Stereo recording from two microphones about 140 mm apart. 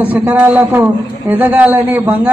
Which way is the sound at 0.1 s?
10° right (ahead or behind).